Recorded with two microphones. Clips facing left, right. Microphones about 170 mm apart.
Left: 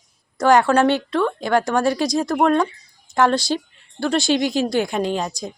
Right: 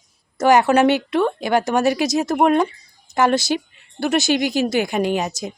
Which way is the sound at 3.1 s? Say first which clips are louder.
Even; 5° right (ahead or behind).